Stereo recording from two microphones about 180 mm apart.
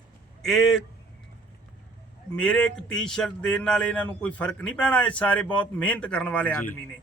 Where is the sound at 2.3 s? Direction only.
5° left (ahead or behind).